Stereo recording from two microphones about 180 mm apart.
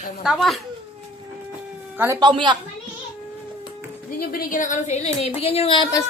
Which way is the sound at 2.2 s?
25° right (ahead or behind).